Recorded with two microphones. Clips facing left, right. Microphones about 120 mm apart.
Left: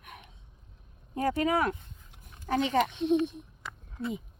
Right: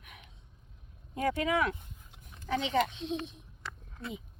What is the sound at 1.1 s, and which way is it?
A child's voice, 35° left (ahead or behind).